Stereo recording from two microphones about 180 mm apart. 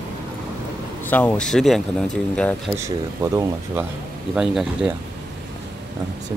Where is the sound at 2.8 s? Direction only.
15° right (ahead or behind).